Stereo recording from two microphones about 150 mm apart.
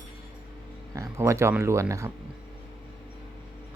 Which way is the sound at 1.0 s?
20° right (ahead or behind).